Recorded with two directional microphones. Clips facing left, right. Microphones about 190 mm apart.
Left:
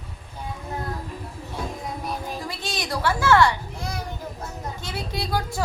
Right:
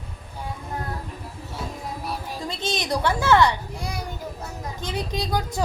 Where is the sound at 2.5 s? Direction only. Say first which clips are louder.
Right 7 dB; 20° right (ahead or behind).